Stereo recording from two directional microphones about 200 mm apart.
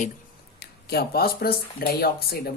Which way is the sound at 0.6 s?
50° left (ahead or behind).